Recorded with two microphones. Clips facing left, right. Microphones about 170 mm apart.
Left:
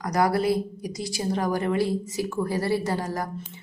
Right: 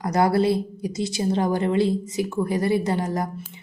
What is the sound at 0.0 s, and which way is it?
A woman's voice, 25° right (ahead or behind).